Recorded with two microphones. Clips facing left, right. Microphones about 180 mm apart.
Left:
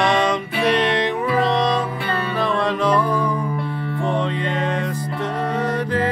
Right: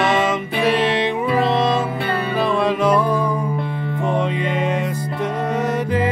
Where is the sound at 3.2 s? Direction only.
25° right (ahead or behind).